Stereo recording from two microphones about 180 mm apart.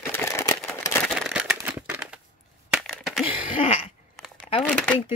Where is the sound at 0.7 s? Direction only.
15° left (ahead or behind).